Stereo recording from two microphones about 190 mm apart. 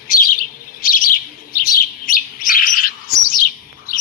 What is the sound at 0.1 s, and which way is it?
Bird, 50° left (ahead or behind).